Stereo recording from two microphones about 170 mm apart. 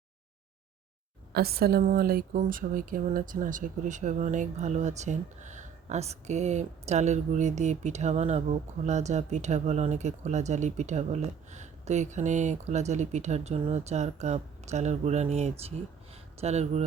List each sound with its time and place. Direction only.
1.3 s a woman's voice: 65° right (ahead or behind); by 16.8 s 40° right (ahead or behind)